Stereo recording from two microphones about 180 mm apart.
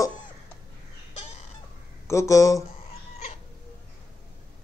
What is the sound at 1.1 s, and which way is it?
Chicken, 35° left (ahead or behind).